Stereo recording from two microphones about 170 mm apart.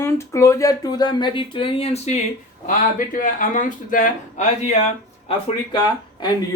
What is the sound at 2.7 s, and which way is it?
Speech, 50° left (ahead or behind).